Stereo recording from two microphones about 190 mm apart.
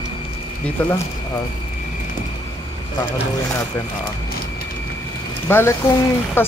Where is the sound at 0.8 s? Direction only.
10° left (ahead or behind).